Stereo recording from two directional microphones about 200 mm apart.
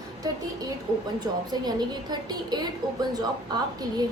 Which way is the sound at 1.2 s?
20° right (ahead or behind).